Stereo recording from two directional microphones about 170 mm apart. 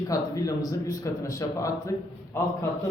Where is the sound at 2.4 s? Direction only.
15° left (ahead or behind).